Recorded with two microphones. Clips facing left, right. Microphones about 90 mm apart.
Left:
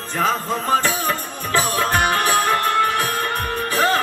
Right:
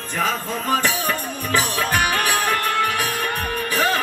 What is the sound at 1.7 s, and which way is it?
Music, 30° left (ahead or behind).